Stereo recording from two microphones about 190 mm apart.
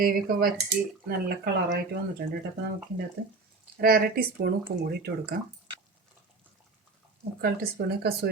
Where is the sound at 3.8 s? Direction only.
55° right (ahead or behind).